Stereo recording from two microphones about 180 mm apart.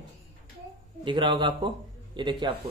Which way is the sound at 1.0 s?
25° right (ahead or behind).